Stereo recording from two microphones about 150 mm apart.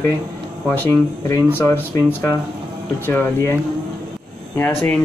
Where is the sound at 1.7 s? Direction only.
15° left (ahead or behind).